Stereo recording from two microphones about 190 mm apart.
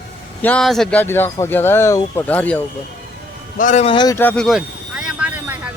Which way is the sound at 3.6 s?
40° left (ahead or behind).